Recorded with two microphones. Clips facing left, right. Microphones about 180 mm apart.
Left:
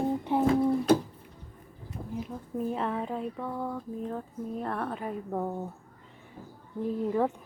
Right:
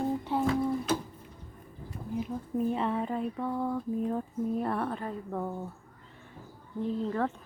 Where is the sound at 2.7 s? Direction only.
Centre (ahead or behind).